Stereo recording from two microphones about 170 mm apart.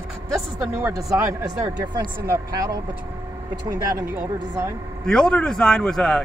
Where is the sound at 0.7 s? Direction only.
20° right (ahead or behind).